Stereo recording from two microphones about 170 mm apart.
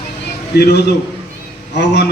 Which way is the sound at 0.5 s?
70° left (ahead or behind).